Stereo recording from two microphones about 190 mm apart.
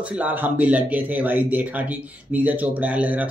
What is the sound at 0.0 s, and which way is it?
Speech, 5° right (ahead or behind).